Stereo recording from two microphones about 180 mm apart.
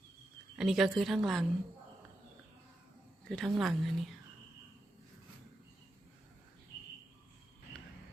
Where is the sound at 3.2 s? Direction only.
Centre (ahead or behind).